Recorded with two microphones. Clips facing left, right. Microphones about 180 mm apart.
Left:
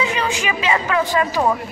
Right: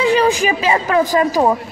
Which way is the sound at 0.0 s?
35° right (ahead or behind).